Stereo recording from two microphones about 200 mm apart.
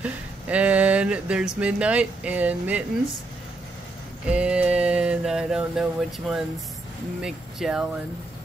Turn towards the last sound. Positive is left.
turn(degrees=-5)  # may be behind; listen again after turning